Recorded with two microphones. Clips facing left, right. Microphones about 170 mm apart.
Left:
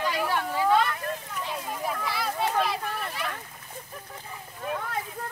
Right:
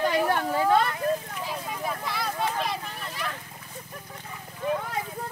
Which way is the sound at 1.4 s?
Centre (ahead or behind).